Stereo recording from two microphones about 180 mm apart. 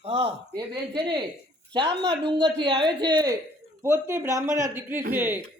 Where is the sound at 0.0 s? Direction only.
35° right (ahead or behind).